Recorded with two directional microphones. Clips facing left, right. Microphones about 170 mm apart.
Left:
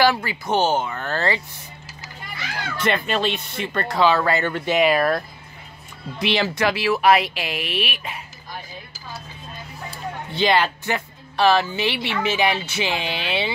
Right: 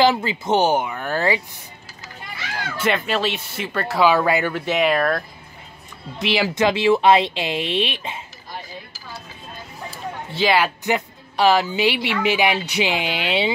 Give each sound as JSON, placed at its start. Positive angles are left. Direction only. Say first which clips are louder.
{"t": 0.0, "sound": "speech", "louder": "right 2 dB", "side_deg": -20}
{"t": 2.8, "sound": "speech", "louder": "right 1 dB", "side_deg": -5}
{"t": 6.5, "sound": "speech", "louder": "right 4 dB", "side_deg": -20}
{"t": 9.8, "sound": "a sound", "louder": "even", "side_deg": -5}
{"t": 10.8, "sound": "speech", "louder": "right 4 dB", "side_deg": -15}